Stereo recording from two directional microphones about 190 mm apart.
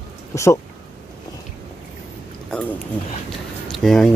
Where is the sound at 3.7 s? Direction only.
Centre (ahead or behind).